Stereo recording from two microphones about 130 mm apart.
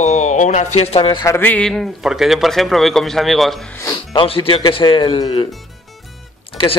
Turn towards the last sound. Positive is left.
turn(degrees=40)  # may be behind; listen again after turning